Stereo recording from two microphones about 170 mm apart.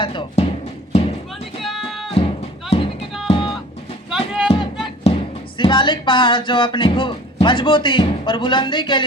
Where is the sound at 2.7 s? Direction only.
40° left (ahead or behind).